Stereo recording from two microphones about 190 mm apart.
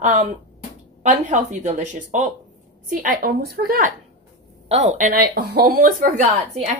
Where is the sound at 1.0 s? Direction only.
40° right (ahead or behind).